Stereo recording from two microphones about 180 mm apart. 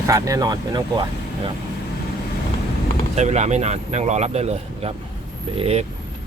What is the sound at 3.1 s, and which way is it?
Speech, 40° right (ahead or behind).